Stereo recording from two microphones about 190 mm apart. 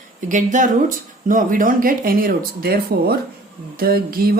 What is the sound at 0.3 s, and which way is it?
Speech, 40° right (ahead or behind).